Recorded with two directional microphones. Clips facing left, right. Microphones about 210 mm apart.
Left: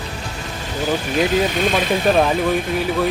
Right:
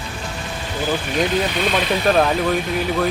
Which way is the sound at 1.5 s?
45° left (ahead or behind).